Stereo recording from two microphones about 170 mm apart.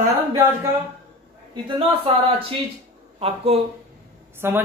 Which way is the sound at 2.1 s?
35° right (ahead or behind).